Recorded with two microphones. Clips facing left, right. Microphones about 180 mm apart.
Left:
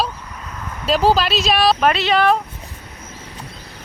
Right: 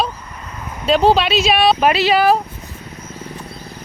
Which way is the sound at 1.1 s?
Centre (ahead or behind).